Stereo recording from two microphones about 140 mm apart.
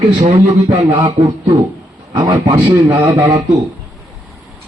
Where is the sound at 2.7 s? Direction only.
15° right (ahead or behind).